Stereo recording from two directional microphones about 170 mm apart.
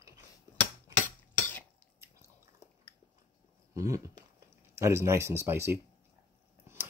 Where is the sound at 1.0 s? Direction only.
10° left (ahead or behind).